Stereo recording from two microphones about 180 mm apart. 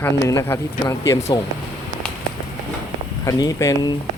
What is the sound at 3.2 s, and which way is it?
Speech, 20° left (ahead or behind).